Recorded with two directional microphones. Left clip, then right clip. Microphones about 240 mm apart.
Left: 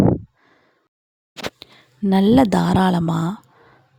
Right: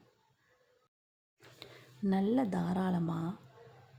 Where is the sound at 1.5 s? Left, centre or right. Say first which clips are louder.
Left 9 dB; left.